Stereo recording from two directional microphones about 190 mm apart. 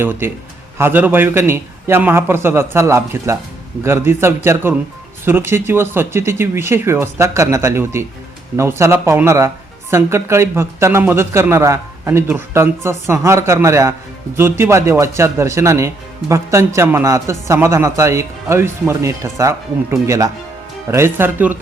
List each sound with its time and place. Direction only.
0.0 s speech: 10° right (ahead or behind)